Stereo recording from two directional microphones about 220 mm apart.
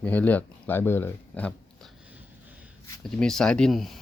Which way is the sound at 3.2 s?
5° left (ahead or behind).